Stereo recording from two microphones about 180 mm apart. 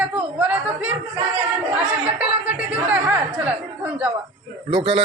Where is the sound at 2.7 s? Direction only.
5° right (ahead or behind).